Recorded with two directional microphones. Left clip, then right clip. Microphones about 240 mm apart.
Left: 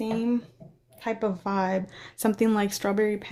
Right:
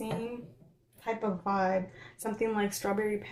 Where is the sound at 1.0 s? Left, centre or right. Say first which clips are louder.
Left 4 dB; left.